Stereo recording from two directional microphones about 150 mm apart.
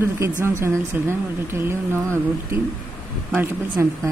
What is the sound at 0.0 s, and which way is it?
Speech, 15° right (ahead or behind).